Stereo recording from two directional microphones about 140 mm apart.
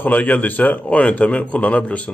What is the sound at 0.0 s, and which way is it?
A man's voice, 10° left (ahead or behind).